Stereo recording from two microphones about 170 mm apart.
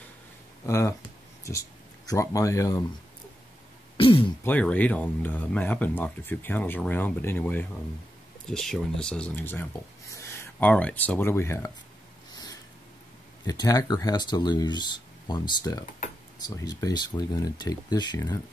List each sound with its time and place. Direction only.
0.7 s speech: 15° left (ahead or behind)
3.9 s throat clearing: 30° left (ahead or behind)
4.5 s speech: 10° left (ahead or behind)
13.5 s speech: 20° left (ahead or behind)